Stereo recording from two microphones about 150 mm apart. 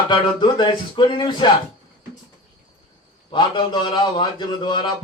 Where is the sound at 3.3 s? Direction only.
30° left (ahead or behind).